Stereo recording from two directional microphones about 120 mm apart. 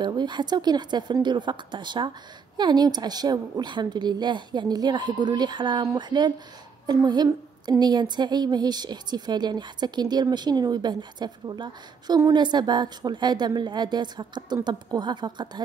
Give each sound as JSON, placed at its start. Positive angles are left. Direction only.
{"t": 0.0, "sound": "a woman's voice", "side_deg": -40}